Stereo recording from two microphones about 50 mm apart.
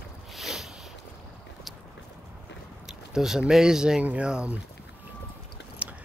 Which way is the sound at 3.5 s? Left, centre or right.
Centre.